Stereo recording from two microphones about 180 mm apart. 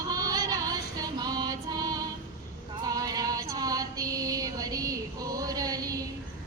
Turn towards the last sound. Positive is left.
turn(degrees=-20)  # may be behind; listen again after turning